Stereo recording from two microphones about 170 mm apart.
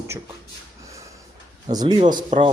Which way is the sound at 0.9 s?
20° right (ahead or behind).